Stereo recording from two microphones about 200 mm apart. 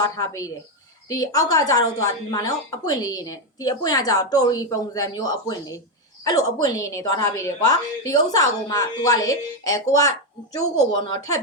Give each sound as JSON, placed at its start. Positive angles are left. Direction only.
{"t": 0.0, "sound": "a woman's voice", "side_deg": 20}